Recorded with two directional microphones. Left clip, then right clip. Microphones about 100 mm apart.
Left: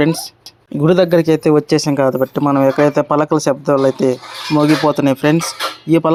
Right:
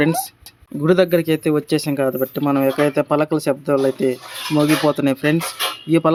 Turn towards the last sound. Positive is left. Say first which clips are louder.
# left 3 dB
turn(degrees=30)  # may be behind; listen again after turning